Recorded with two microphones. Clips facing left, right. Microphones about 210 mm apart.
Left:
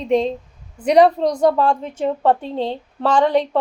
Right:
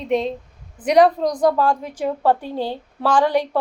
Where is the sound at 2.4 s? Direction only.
30° left (ahead or behind).